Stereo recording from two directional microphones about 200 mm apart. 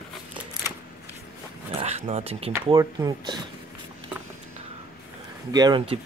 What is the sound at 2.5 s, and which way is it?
Speech, 15° right (ahead or behind).